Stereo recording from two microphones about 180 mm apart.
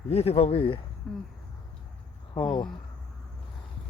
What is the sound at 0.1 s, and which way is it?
Speech, 35° left (ahead or behind).